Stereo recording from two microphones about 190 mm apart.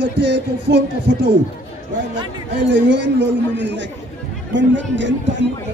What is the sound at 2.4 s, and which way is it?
A man's voice, 70° right (ahead or behind).